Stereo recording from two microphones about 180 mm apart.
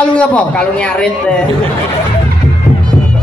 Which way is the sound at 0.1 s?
5° left (ahead or behind).